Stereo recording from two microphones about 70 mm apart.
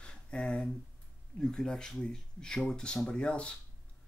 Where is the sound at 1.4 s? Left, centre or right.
Centre.